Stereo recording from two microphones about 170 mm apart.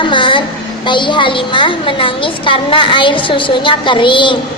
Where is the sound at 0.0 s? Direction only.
30° left (ahead or behind).